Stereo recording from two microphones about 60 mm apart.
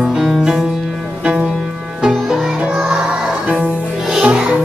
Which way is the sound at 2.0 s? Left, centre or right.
Centre.